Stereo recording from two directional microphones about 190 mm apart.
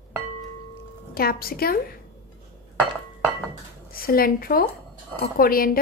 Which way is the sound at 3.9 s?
50° left (ahead or behind).